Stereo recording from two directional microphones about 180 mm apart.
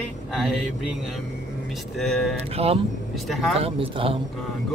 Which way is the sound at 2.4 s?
35° right (ahead or behind).